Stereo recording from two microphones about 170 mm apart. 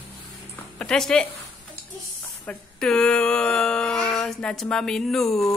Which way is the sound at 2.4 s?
5° left (ahead or behind).